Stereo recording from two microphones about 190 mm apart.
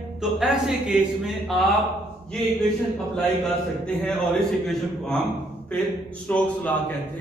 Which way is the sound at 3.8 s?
Centre (ahead or behind).